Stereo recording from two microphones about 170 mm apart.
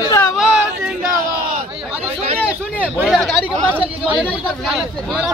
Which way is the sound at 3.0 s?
Centre (ahead or behind).